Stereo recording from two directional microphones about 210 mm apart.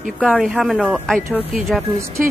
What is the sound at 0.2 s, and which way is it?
Speech, 5° left (ahead or behind).